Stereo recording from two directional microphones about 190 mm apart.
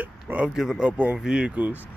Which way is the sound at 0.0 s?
10° right (ahead or behind).